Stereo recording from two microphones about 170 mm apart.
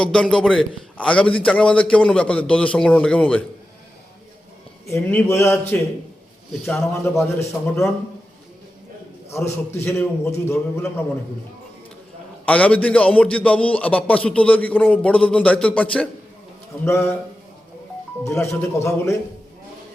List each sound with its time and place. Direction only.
0.0 s a man's voice: 5° left (ahead or behind)
4.9 s a man's voice: 15° left (ahead or behind)
9.3 s a man's voice: 15° left (ahead or behind)
12.5 s a man's voice: 5° left (ahead or behind)
18.3 s a man's voice: 15° left (ahead or behind)